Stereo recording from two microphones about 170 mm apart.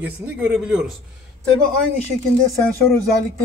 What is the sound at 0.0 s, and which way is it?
Speech, 5° right (ahead or behind).